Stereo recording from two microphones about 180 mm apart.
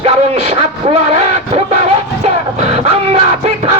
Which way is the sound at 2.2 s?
35° right (ahead or behind).